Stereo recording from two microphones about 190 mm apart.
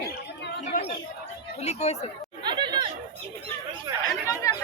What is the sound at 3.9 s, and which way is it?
Speech, 20° right (ahead or behind).